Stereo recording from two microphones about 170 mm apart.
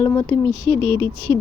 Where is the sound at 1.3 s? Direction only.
20° left (ahead or behind).